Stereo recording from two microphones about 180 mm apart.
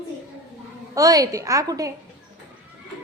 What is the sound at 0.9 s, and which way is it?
Speech, 20° right (ahead or behind).